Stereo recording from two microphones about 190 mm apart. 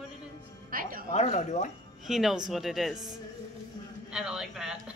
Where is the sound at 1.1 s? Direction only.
35° left (ahead or behind).